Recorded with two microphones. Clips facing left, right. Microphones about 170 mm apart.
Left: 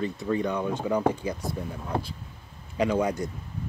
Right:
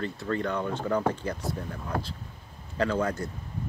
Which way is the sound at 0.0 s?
15° left (ahead or behind).